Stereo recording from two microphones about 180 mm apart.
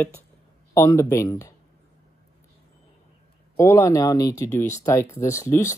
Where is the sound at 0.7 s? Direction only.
15° left (ahead or behind).